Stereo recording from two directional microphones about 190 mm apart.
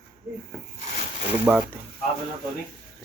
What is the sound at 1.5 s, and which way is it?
Speech, 5° right (ahead or behind).